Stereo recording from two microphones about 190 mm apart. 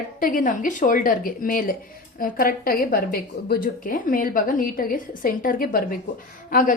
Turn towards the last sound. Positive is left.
turn(degrees=45)  # may be behind; listen again after turning